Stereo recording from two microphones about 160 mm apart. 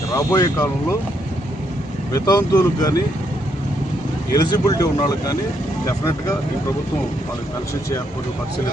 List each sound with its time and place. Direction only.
0.1 s speech: 20° left (ahead or behind)
2.2 s speech: 20° left (ahead or behind)
4.3 s speech: 25° left (ahead or behind)